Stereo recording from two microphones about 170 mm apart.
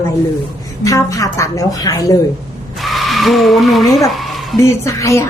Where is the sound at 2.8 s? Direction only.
Centre (ahead or behind).